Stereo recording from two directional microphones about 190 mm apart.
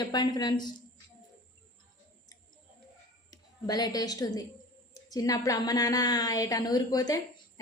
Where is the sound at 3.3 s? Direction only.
20° left (ahead or behind).